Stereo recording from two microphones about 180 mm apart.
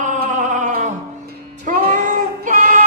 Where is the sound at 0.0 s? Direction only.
45° right (ahead or behind).